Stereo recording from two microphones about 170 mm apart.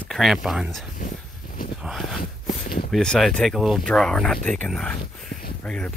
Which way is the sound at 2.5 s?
55° left (ahead or behind).